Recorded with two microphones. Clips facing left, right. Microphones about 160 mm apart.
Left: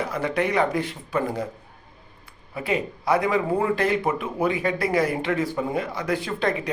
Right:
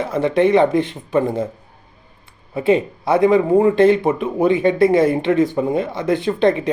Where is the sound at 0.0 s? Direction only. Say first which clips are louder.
Right 9 dB; 25° right (ahead or behind).